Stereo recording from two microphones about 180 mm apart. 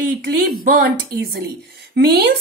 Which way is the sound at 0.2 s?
55° right (ahead or behind).